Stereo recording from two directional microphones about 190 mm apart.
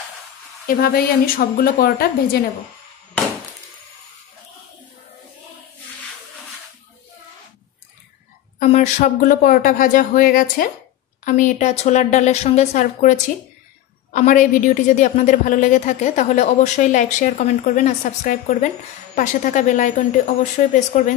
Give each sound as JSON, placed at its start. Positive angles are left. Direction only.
{"t": 0.7, "sound": "speech", "side_deg": 50}
{"t": 8.5, "sound": "a woman's voice", "side_deg": 35}
{"t": 14.1, "sound": "a woman's voice", "side_deg": 40}